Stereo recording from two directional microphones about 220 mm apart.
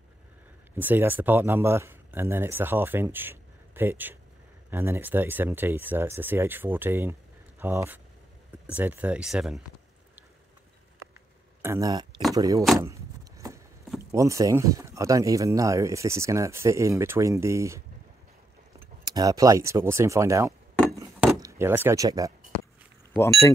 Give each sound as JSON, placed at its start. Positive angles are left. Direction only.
{"t": 0.7, "sound": "speech", "side_deg": -10}
{"t": 11.6, "sound": "speech", "side_deg": -15}
{"t": 12.7, "sound": "a sound", "side_deg": -15}
{"t": 13.9, "sound": "speech", "side_deg": -15}
{"t": 19.0, "sound": "speech", "side_deg": -15}
{"t": 20.9, "sound": "a sound", "side_deg": -15}
{"t": 21.4, "sound": "speech", "side_deg": -10}
{"t": 23.1, "sound": "speech", "side_deg": 10}